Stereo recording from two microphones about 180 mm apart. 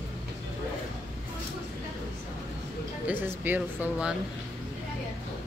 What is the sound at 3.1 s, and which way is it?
Speech, 10° right (ahead or behind).